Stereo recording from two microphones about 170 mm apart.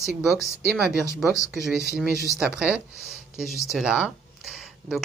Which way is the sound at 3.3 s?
Centre (ahead or behind).